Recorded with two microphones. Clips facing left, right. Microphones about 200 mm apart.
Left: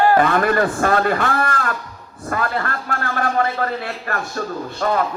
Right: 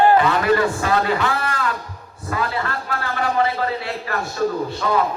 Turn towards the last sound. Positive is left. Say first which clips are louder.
# even
turn(degrees=50)  # may be behind; listen again after turning